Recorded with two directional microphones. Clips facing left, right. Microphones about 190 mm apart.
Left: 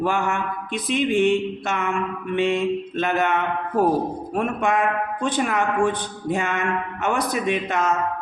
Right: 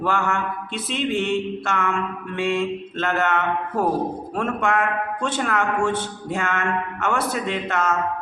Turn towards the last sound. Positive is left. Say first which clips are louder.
# left 2 dB
turn(degrees=15)  # may be behind; listen again after turning